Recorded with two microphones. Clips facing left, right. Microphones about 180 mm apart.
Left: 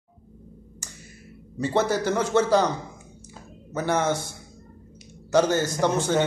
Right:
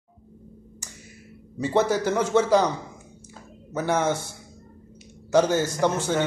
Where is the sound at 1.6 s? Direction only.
10° right (ahead or behind).